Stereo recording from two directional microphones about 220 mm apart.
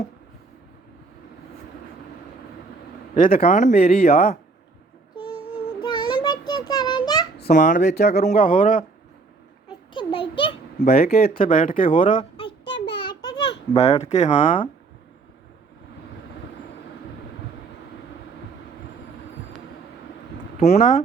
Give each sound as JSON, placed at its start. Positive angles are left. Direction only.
{"t": 3.2, "sound": "speech", "side_deg": 40}
{"t": 5.8, "sound": "a sound", "side_deg": 20}
{"t": 8.2, "sound": "speech", "side_deg": 35}
{"t": 9.6, "sound": "a sound", "side_deg": 20}
{"t": 10.8, "sound": "speech", "side_deg": 45}
{"t": 12.5, "sound": "child singing", "side_deg": 20}
{"t": 13.0, "sound": "a sound", "side_deg": 20}
{"t": 13.7, "sound": "speech", "side_deg": 30}
{"t": 20.6, "sound": "speech", "side_deg": 30}